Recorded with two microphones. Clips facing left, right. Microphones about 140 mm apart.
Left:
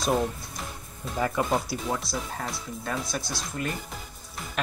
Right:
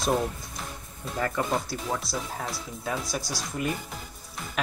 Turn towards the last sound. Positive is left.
turn(degrees=0)  # may be behind; listen again after turning